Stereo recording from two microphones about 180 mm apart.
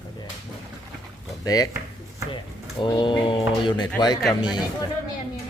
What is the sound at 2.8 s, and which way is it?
Speech, 25° left (ahead or behind).